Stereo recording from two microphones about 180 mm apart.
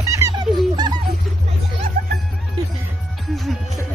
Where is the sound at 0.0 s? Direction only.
15° right (ahead or behind).